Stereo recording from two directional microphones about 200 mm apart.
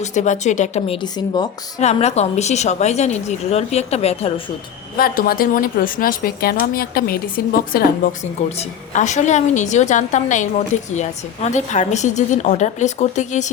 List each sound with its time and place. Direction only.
0.0 s a woman's voice: 35° left (ahead or behind)
4.9 s a woman's voice: 45° left (ahead or behind)